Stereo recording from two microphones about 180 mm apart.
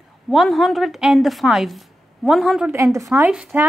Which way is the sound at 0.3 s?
Centre (ahead or behind).